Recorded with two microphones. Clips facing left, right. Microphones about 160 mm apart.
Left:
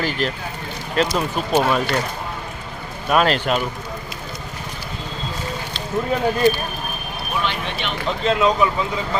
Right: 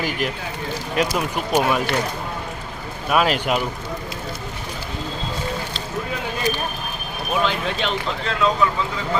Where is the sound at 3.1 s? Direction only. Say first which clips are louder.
Left 1 dB; 5° right (ahead or behind).